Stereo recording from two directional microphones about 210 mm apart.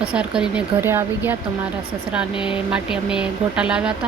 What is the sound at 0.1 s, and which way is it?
Speech, 5° right (ahead or behind).